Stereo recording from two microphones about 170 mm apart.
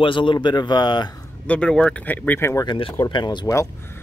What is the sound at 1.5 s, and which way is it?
Speech, 5° left (ahead or behind).